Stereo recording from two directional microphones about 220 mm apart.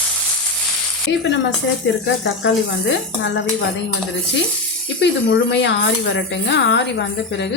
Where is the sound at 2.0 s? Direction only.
60° left (ahead or behind).